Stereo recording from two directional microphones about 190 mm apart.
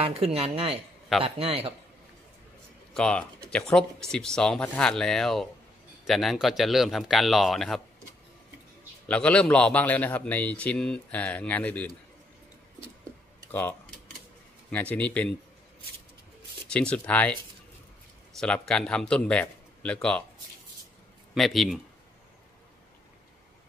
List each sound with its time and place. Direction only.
0.0 s a woman's voice: 30° right (ahead or behind)
2.9 s a man's voice: 5° left (ahead or behind)
9.0 s a man's voice: 5° left (ahead or behind)
13.5 s a man's voice: 10° left (ahead or behind)
16.6 s a man's voice: 5° left (ahead or behind)
18.4 s a man's voice: 5° left (ahead or behind)
21.4 s a man's voice: centre (ahead or behind)